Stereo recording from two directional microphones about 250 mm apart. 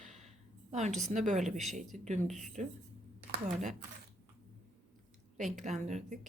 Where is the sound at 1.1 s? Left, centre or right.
Right.